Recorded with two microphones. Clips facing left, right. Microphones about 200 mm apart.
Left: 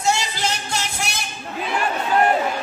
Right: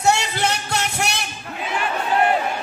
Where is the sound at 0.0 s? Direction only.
65° right (ahead or behind).